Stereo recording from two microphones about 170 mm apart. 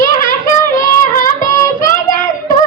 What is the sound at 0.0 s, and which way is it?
Child singing, 50° left (ahead or behind).